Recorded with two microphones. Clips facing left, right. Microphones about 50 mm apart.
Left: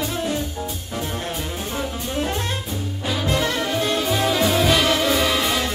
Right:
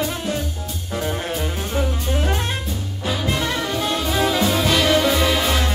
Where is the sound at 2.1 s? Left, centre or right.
Right.